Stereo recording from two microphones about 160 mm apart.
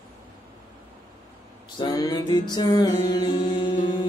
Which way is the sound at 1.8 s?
25° left (ahead or behind).